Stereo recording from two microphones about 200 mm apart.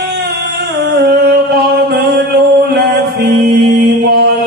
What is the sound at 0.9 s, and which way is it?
Music, 55° right (ahead or behind).